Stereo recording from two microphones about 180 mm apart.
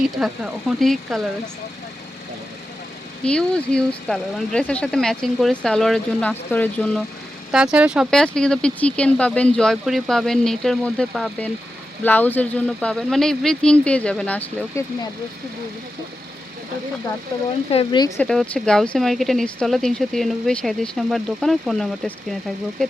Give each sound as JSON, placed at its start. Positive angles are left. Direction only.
{"t": 0.2, "sound": "speech", "side_deg": 0}
{"t": 3.2, "sound": "speech", "side_deg": 5}
{"t": 7.5, "sound": "speech", "side_deg": -5}
{"t": 17.7, "sound": "speech", "side_deg": 30}
{"t": 18.2, "sound": "speech", "side_deg": 5}